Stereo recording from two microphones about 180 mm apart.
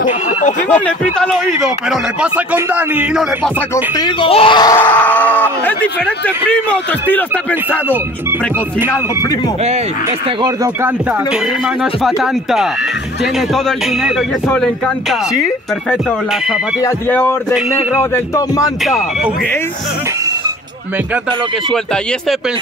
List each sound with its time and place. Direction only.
0.4 s speech: 45° left (ahead or behind)
0.7 s speech: 5° left (ahead or behind)
3.7 s speech: 25° left (ahead or behind)
4.7 s speech: 10° left (ahead or behind)
7.9 s speech: 10° right (ahead or behind)
10.4 s speech: 20° right (ahead or behind)
12.2 s speech: centre (ahead or behind)
16.8 s speech: 10° left (ahead or behind)
18.9 s speech: centre (ahead or behind)